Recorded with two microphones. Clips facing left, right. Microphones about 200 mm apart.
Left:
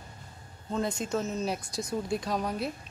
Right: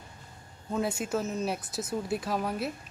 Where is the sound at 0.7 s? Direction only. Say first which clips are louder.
Even; 10° right (ahead or behind).